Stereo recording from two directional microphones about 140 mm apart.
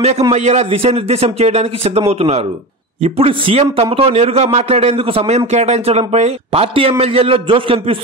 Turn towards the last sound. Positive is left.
turn(degrees=-40)  # may be behind; listen again after turning